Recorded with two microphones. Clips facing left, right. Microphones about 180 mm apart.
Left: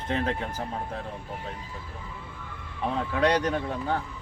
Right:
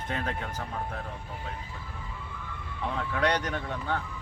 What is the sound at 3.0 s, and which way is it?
Speech, 30° left (ahead or behind).